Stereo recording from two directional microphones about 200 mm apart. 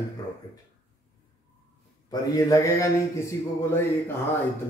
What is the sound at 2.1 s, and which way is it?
A man's voice, 15° left (ahead or behind).